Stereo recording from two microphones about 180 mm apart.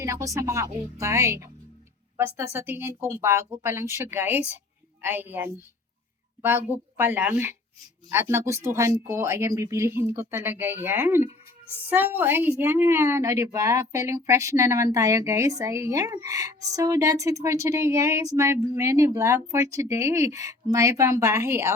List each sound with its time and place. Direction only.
0.0 s a woman's voice: 15° right (ahead or behind)
6.7 s a woman's voice: 10° right (ahead or behind)